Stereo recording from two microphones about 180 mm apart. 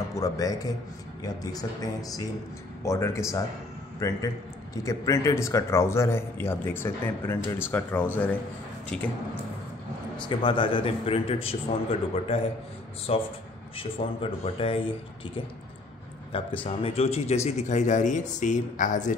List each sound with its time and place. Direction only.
0.1 s a man's voice: 20° left (ahead or behind)
10.2 s speech: 25° left (ahead or behind); by 19.1 s 45° left (ahead or behind)